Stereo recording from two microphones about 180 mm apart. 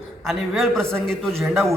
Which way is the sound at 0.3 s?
Centre (ahead or behind).